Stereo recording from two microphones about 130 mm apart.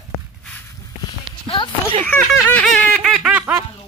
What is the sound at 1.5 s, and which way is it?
Speech, 40° left (ahead or behind).